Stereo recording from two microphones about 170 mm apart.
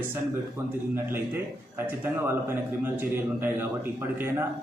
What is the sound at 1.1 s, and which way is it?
A man's voice, 10° right (ahead or behind).